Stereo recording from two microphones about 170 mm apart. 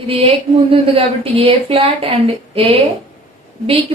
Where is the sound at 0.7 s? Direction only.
35° right (ahead or behind).